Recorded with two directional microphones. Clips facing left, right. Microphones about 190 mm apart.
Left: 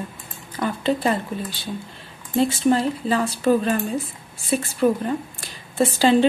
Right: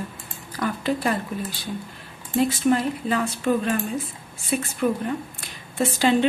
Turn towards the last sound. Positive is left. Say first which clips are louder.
# left 3 dB
turn(degrees=30)  # may be behind; listen again after turning